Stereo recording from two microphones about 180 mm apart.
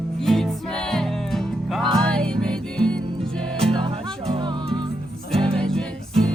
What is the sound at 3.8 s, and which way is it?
Music, 30° right (ahead or behind).